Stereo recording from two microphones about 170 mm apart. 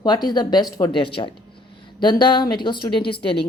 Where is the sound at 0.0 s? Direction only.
25° left (ahead or behind).